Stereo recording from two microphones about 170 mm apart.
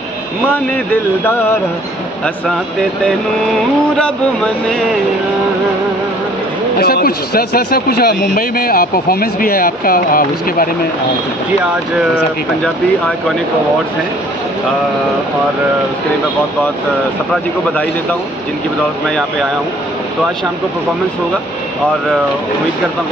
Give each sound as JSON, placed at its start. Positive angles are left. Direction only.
{"t": 6.8, "sound": "a man's voice", "side_deg": 65}